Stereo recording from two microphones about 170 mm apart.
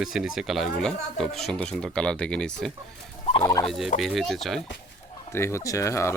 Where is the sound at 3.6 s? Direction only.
Centre (ahead or behind).